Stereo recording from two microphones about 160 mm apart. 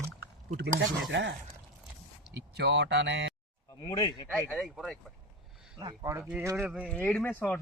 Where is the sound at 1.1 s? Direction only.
90° right.